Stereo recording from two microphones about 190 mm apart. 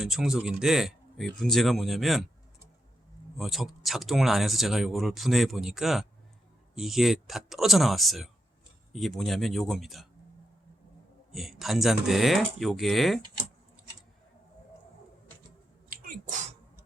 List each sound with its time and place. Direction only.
0.0 s speech: centre (ahead or behind)
3.3 s speech: centre (ahead or behind)
11.3 s speech: centre (ahead or behind)
15.9 s sneeze: 45° right (ahead or behind)